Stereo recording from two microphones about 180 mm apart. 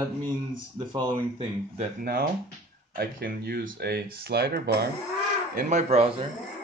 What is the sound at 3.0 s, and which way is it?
Speech, 60° right (ahead or behind).